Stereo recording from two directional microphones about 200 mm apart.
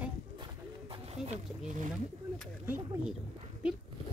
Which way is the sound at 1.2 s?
Centre (ahead or behind).